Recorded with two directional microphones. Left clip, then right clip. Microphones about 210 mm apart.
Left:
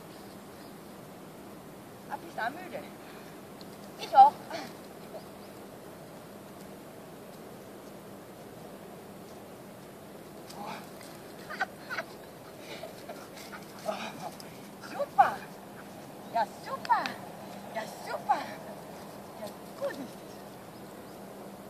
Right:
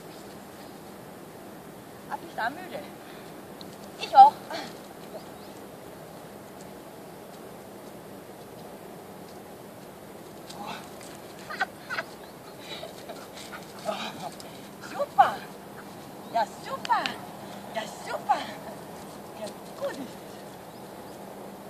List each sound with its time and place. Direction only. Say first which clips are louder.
2.0 s speech: right 4 dB; 20° left (ahead or behind)
4.0 s speech: right 4 dB; 10° left (ahead or behind)
11.5 s frog: right 4 dB; 10° left (ahead or behind)
13.8 s dog: right 3 dB; 5° left (ahead or behind)
14.9 s a sound: right 3 dB; centre (ahead or behind)
16.3 s vehicle: right 3 dB; 5° right (ahead or behind)